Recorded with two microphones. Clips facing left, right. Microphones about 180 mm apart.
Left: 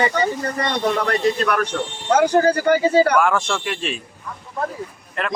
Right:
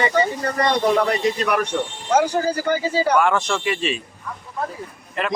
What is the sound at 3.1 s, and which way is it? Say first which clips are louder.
Speech: even; centre (ahead or behind).